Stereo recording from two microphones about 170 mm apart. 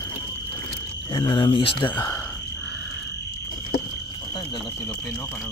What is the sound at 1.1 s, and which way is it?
Speech, 30° left (ahead or behind).